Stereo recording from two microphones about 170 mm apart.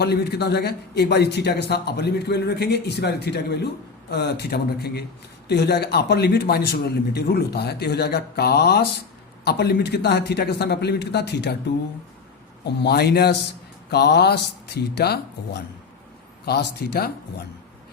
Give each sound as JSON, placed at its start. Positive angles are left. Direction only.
{"t": 0.0, "sound": "a man's voice", "side_deg": 70}
{"t": 12.6, "sound": "a man's voice", "side_deg": 75}
{"t": 16.5, "sound": "a man's voice", "side_deg": 70}